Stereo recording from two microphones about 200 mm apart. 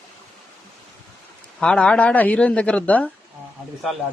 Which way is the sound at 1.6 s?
5° left (ahead or behind).